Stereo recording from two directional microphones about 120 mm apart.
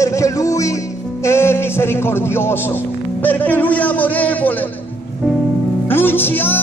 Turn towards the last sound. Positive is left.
turn(degrees=15)  # may be behind; listen again after turning